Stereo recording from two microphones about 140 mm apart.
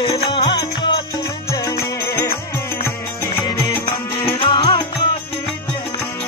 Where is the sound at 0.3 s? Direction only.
35° left (ahead or behind).